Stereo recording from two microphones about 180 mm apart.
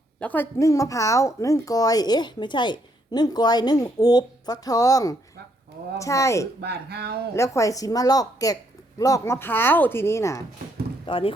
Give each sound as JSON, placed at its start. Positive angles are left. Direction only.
{"t": 0.2, "sound": "a woman's voice", "side_deg": 10}
{"t": 6.6, "sound": "speech", "side_deg": -65}
{"t": 7.3, "sound": "a woman's voice", "side_deg": 15}
{"t": 11.0, "sound": "speech", "side_deg": 30}